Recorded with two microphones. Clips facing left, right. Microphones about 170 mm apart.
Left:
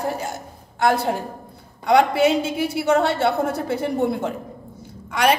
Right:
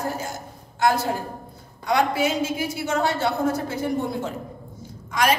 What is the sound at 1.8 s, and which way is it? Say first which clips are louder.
A woman's voice: left 5 dB; 65° left (ahead or behind).